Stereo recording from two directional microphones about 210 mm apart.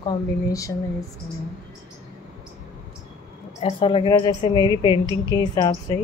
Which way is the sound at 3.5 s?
30° left (ahead or behind).